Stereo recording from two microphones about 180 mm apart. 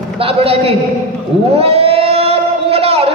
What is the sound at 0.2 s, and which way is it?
Speech, 35° right (ahead or behind).